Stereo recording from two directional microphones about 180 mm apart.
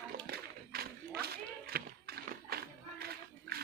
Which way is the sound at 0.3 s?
60° right (ahead or behind).